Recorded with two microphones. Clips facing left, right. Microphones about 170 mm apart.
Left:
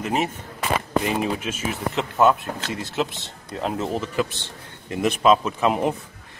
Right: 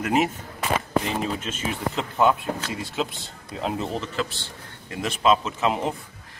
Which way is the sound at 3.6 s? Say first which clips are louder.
Left 2 dB; centre (ahead or behind).